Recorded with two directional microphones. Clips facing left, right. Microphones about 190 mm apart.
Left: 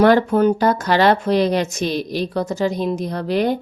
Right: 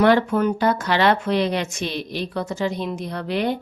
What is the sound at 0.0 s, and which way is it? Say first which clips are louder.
A woman's voice: left 4 dB; 40° left (ahead or behind).